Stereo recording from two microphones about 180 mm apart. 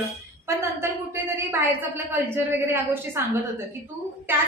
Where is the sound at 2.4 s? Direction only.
10° right (ahead or behind).